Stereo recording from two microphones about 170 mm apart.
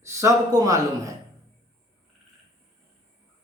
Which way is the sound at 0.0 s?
15° right (ahead or behind).